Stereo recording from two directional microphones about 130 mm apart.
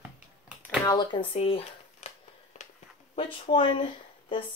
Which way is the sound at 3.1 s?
45° left (ahead or behind).